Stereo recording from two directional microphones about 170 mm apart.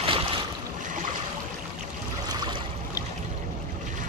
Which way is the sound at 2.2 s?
25° right (ahead or behind).